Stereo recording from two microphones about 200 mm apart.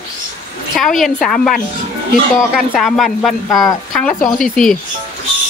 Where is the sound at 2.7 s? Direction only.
Centre (ahead or behind).